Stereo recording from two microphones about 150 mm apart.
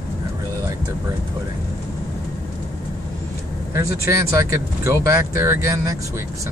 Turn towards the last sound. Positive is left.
turn(degrees=-20)  # may be behind; listen again after turning